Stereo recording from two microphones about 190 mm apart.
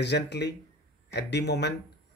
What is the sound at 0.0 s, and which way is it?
Speech, 65° left (ahead or behind).